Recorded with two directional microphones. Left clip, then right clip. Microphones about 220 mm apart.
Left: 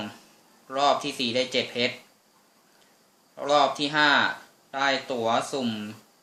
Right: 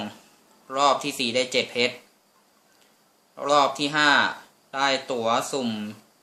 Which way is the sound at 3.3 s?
15° right (ahead or behind).